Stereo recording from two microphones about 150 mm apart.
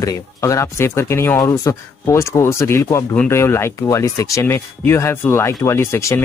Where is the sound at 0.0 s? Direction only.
20° left (ahead or behind).